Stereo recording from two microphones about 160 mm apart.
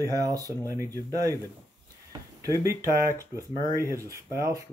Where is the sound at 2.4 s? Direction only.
20° right (ahead or behind).